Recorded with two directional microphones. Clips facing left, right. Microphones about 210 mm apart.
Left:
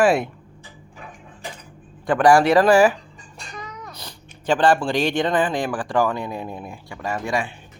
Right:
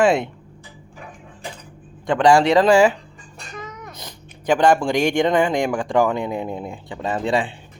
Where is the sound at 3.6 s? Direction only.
20° right (ahead or behind).